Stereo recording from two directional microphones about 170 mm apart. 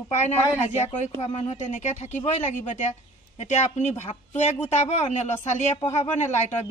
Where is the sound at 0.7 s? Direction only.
40° left (ahead or behind).